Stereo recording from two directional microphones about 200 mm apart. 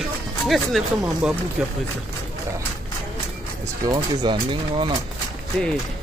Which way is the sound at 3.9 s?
20° right (ahead or behind).